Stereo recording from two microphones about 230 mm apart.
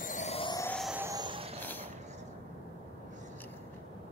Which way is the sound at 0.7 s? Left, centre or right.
Centre.